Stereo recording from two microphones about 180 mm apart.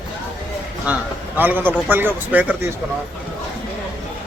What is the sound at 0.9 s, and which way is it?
A man's voice, 5° right (ahead or behind).